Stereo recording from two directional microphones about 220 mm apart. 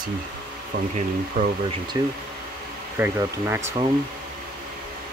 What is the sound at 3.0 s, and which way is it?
Speech, 10° right (ahead or behind).